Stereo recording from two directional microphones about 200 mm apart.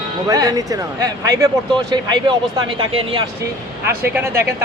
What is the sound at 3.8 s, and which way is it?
Speech, 50° right (ahead or behind).